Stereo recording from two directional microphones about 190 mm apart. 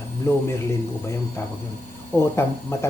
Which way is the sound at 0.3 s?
15° left (ahead or behind).